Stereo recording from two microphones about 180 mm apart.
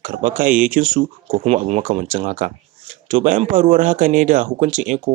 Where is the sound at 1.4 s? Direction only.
35° right (ahead or behind).